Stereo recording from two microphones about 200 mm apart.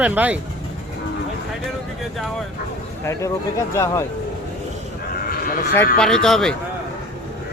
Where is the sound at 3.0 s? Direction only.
15° left (ahead or behind).